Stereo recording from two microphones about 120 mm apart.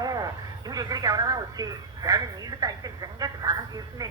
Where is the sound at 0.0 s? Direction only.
30° right (ahead or behind).